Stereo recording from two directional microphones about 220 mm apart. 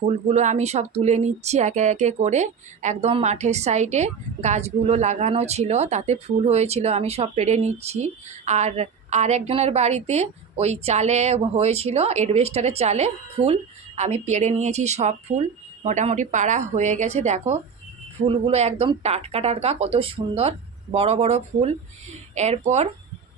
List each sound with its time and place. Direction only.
0.3 s speech: 30° right (ahead or behind)